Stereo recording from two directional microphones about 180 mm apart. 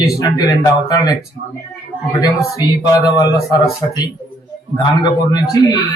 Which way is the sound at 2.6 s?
20° left (ahead or behind).